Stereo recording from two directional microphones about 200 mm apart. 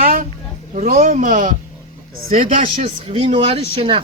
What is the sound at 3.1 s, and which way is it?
Speech, 30° right (ahead or behind).